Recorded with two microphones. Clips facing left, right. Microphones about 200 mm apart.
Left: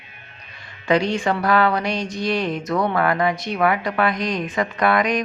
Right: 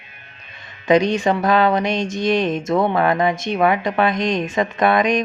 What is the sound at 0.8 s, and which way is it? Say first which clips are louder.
Mantra: right 4 dB; 20° right (ahead or behind).